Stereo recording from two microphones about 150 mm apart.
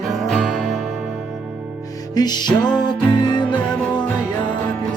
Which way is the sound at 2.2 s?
30° left (ahead or behind).